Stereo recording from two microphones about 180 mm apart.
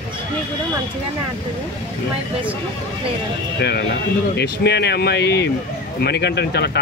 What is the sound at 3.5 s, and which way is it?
Speech, 65° left (ahead or behind).